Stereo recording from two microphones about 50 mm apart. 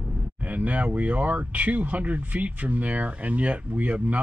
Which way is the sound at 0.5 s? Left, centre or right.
Right.